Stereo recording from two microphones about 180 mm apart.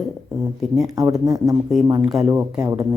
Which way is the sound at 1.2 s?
20° right (ahead or behind).